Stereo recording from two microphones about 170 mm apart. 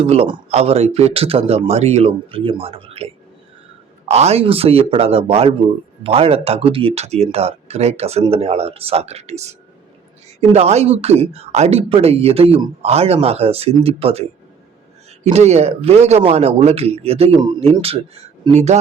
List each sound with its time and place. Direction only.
0.0 s speech: 35° right (ahead or behind)
4.1 s speech: 40° right (ahead or behind)